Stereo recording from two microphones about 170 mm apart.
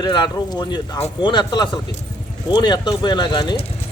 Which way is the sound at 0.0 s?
25° left (ahead or behind).